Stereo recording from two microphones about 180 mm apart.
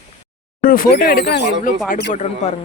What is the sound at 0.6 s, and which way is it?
Speech, 50° left (ahead or behind).